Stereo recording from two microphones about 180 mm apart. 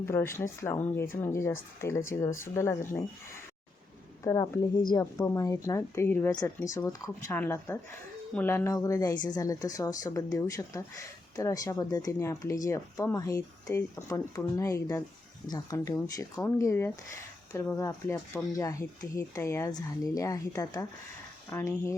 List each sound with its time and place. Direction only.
0.0 s speech: 15° left (ahead or behind)
4.2 s speech: 15° left (ahead or behind)